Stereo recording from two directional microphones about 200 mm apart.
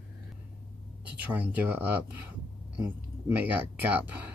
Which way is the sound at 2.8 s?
10° right (ahead or behind).